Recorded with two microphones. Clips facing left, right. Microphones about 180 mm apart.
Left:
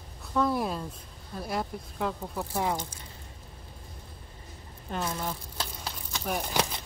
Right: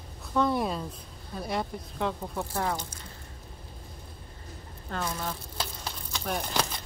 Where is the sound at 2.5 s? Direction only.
15° left (ahead or behind).